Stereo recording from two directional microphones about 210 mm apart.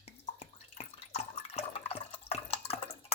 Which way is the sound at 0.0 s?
30° left (ahead or behind).